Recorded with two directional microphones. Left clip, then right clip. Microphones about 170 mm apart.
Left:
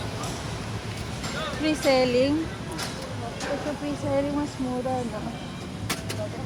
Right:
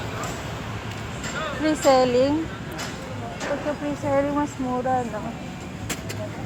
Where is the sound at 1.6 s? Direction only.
5° left (ahead or behind).